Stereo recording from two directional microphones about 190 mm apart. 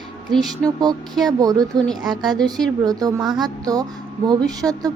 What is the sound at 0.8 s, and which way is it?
Speech, 20° right (ahead or behind).